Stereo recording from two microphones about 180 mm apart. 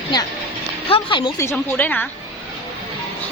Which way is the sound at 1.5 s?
10° left (ahead or behind).